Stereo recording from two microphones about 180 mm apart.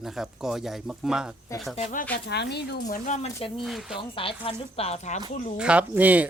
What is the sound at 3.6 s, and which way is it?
Speech, centre (ahead or behind).